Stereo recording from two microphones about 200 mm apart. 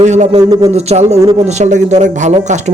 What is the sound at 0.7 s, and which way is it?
Speech, 30° right (ahead or behind).